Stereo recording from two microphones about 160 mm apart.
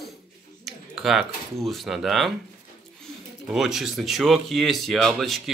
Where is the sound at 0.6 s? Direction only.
Centre (ahead or behind).